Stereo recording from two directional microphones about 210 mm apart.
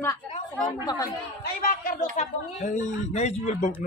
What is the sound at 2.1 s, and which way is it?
A woman's voice, 35° left (ahead or behind).